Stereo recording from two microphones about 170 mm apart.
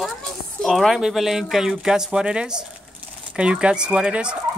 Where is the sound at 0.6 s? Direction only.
Centre (ahead or behind).